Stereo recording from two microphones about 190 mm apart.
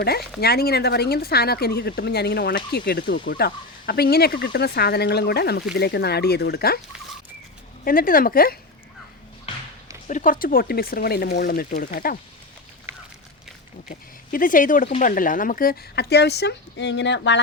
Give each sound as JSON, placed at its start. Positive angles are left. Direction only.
{"t": 0.3, "sound": "speech", "side_deg": 55}
{"t": 7.9, "sound": "speech", "side_deg": 50}
{"t": 10.1, "sound": "speech", "side_deg": 45}
{"t": 13.8, "sound": "speech", "side_deg": 45}